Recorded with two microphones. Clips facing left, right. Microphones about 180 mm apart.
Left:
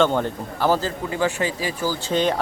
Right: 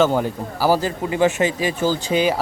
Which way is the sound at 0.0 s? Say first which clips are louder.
Right 2 dB; 5° right (ahead or behind).